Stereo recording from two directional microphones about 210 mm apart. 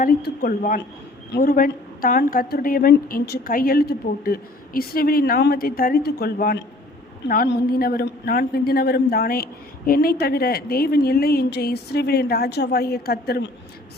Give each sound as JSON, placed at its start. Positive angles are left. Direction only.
{"t": 0.0, "sound": "a woman's voice", "side_deg": 45}